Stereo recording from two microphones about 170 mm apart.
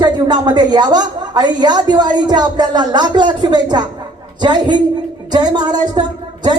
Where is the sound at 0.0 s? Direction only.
25° right (ahead or behind).